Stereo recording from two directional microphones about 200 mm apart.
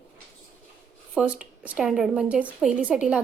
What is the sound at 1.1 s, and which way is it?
A woman's voice, 5° right (ahead or behind).